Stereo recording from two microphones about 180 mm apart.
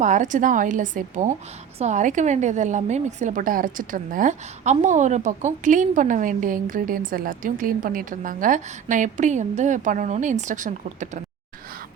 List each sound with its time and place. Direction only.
0.0 s a woman's voice: 45° right (ahead or behind)